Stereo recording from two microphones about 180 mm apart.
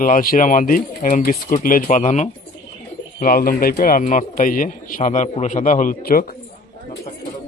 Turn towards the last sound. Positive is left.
turn(degrees=55)  # may be behind; listen again after turning